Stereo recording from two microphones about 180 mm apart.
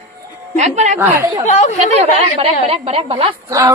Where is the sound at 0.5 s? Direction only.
40° right (ahead or behind).